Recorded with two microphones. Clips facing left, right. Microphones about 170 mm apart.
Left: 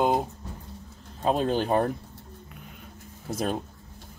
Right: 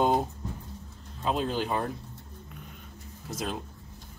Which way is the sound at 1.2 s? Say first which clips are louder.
Left 4 dB; 45° left (ahead or behind).